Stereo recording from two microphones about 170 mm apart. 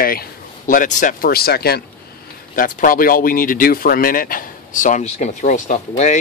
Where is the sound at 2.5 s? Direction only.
55° left (ahead or behind).